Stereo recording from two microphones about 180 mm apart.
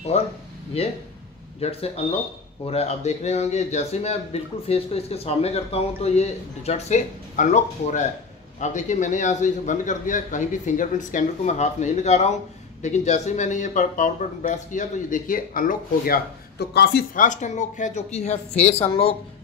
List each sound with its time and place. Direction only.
0.1 s speech: 35° left (ahead or behind)
1.6 s speech: 35° left (ahead or behind)